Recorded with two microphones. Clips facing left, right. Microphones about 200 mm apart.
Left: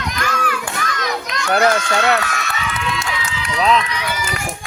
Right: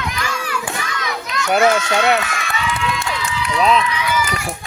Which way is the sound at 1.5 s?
15° right (ahead or behind).